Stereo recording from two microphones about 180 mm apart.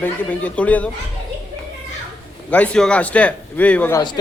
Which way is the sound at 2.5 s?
5° left (ahead or behind).